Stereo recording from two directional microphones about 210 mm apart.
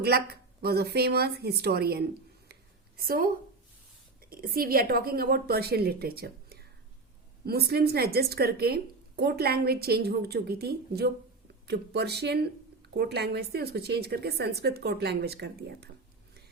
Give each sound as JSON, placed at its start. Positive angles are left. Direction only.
{"t": 0.0, "sound": "a woman's voice", "side_deg": -50}
{"t": 7.7, "sound": "a woman's voice", "side_deg": -50}